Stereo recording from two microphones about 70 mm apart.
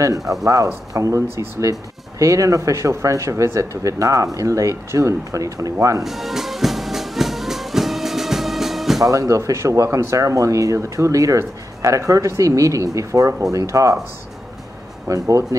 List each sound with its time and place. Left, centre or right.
0.5 s speech: right
6.0 s music: centre
9.0 s speech: right
15.0 s speech: right